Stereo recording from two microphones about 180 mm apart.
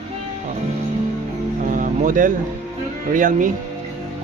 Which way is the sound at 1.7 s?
45° right (ahead or behind).